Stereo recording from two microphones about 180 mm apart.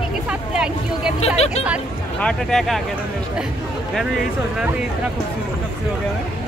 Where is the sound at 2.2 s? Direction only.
5° left (ahead or behind).